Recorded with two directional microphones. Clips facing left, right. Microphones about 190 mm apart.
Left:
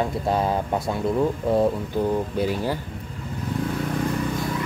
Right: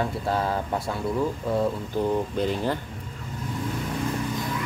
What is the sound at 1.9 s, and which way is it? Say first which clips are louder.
Speech: left 2 dB; 10° left (ahead or behind).